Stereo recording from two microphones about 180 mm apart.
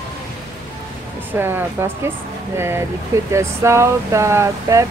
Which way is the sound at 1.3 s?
10° right (ahead or behind).